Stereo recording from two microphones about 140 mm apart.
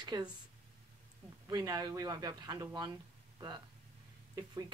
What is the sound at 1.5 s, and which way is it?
A woman's voice, 30° right (ahead or behind).